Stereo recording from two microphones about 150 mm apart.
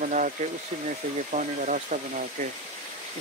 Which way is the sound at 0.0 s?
55° right (ahead or behind).